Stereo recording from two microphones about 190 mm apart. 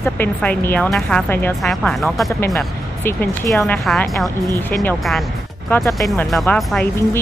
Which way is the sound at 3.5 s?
5° left (ahead or behind).